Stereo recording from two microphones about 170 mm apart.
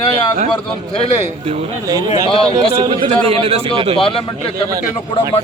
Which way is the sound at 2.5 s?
30° right (ahead or behind).